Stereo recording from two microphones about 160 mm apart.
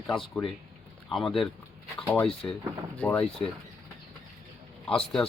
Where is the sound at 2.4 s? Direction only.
15° left (ahead or behind).